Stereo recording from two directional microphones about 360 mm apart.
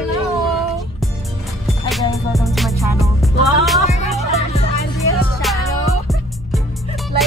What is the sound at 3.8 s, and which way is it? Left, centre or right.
Music, centre.